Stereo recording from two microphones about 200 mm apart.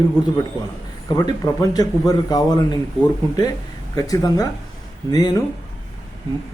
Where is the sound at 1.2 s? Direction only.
20° left (ahead or behind).